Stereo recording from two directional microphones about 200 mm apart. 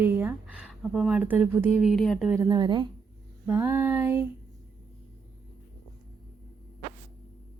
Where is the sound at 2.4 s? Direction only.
20° right (ahead or behind).